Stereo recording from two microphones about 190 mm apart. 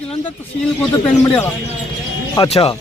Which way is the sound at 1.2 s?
10° left (ahead or behind).